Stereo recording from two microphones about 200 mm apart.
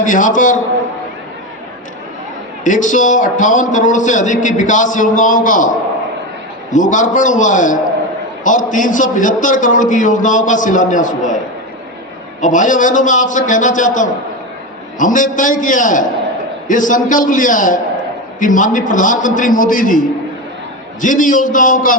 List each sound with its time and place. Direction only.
0.0 s a man's voice: 40° left (ahead or behind)
2.6 s a man's voice: 40° left (ahead or behind)
12.4 s a man's voice: 40° left (ahead or behind)